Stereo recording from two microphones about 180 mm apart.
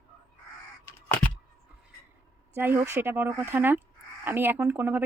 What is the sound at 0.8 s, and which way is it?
Crow, 10° left (ahead or behind).